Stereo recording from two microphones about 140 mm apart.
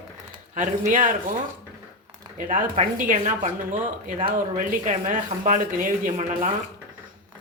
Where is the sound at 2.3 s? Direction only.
65° right (ahead or behind).